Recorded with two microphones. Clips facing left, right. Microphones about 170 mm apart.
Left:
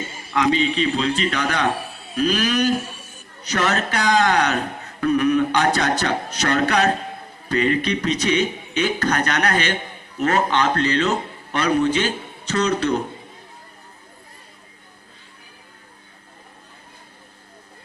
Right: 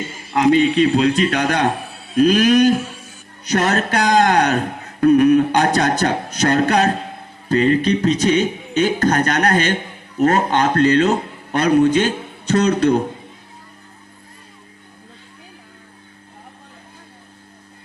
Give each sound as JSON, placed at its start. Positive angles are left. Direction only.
{"t": 0.3, "sound": "speech", "side_deg": -45}